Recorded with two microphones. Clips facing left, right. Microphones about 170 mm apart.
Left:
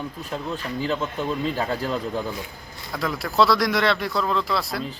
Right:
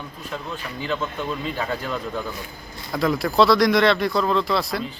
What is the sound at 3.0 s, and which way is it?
Speech, centre (ahead or behind).